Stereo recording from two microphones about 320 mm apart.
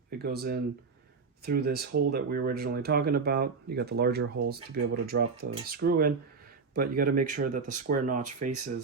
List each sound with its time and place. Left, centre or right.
0.2 s speech: right